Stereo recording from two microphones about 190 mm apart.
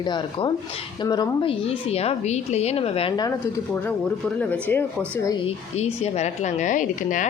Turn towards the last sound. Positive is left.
turn(degrees=45)  # may be behind; listen again after turning